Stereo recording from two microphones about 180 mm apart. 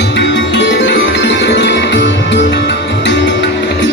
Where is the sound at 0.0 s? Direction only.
75° left (ahead or behind).